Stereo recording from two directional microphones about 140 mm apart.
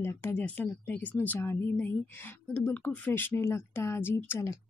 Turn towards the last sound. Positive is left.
turn(degrees=20)  # may be behind; listen again after turning